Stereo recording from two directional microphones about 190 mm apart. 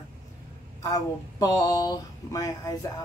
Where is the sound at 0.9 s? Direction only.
20° left (ahead or behind).